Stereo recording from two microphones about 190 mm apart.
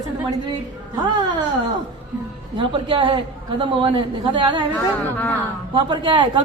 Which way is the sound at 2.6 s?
25° right (ahead or behind).